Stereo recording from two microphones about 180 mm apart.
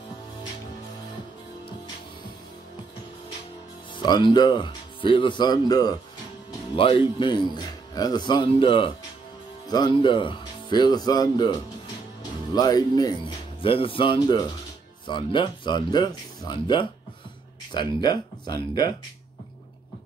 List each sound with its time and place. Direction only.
3.9 s speech: 25° left (ahead or behind)